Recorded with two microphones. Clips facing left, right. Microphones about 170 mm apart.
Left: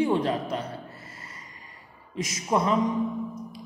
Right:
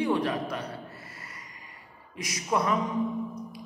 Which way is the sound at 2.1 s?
25° left (ahead or behind).